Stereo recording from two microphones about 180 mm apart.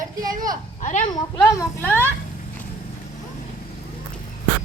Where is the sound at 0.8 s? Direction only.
45° left (ahead or behind).